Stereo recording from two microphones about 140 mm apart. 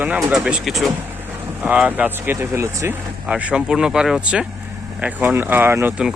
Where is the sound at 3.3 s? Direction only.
5° right (ahead or behind).